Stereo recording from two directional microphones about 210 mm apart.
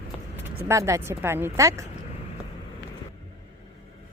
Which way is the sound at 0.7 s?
15° right (ahead or behind).